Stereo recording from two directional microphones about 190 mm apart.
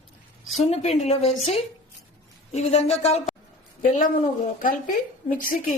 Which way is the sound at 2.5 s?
35° left (ahead or behind).